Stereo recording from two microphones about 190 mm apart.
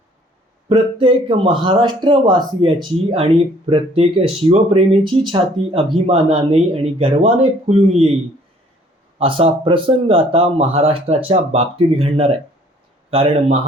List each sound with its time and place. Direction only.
0.7 s speech: 30° right (ahead or behind)
9.1 s speech: 30° right (ahead or behind)